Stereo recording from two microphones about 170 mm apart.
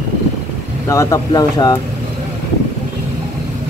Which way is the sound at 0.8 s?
20° left (ahead or behind).